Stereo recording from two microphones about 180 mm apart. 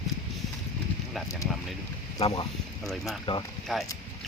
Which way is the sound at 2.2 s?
35° left (ahead or behind).